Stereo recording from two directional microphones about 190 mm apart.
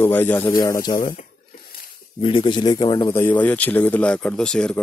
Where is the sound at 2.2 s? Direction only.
25° left (ahead or behind).